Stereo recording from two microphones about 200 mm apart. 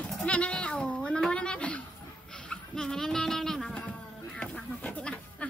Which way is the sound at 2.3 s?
5° left (ahead or behind).